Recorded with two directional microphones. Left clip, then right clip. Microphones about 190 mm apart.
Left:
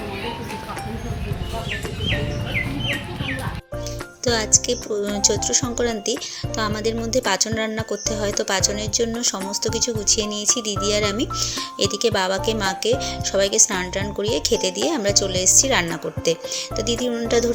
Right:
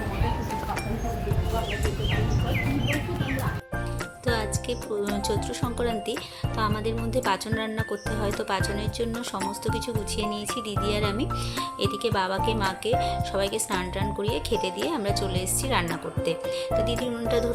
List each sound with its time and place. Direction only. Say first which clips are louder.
4.3 s speech: left 9 dB; 25° left (ahead or behind)